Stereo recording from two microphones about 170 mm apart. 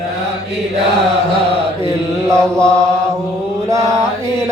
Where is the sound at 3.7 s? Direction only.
20° right (ahead or behind).